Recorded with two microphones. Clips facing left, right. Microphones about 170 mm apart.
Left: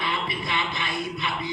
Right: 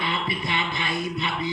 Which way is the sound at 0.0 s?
20° right (ahead or behind).